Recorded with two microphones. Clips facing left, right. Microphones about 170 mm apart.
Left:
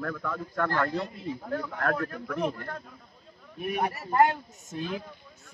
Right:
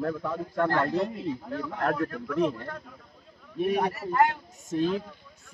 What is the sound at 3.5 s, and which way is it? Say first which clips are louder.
Speech: right 5 dB; 35° right (ahead or behind).